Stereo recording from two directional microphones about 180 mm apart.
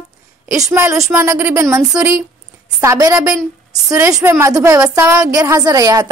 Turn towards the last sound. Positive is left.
turn(degrees=-20)  # may be behind; listen again after turning